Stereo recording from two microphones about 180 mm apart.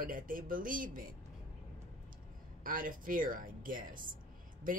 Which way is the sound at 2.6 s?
50° right (ahead or behind).